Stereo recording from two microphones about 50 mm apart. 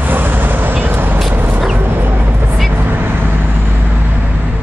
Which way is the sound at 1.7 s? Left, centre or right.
Right.